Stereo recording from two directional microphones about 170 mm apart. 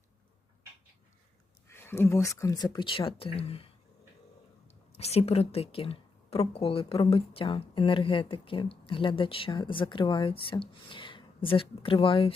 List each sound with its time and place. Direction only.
1.6 s speech: 15° left (ahead or behind); by 3.7 s 35° left (ahead or behind)
4.7 s speech: 40° left (ahead or behind)